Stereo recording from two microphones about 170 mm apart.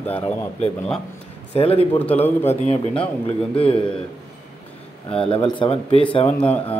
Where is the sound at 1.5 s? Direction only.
35° left (ahead or behind).